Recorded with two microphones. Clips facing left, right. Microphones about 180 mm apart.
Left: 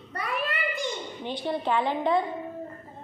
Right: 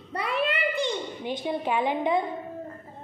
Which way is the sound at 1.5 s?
15° right (ahead or behind).